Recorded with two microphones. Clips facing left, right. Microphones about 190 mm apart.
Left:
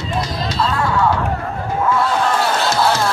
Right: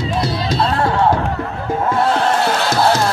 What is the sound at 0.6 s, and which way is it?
Music, 30° right (ahead or behind).